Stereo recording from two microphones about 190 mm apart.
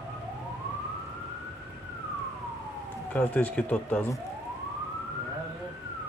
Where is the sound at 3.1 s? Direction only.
10° left (ahead or behind).